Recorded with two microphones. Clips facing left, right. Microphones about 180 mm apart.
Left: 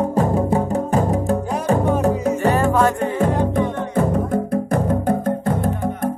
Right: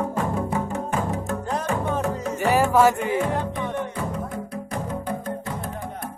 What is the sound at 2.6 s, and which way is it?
Music, 5° right (ahead or behind).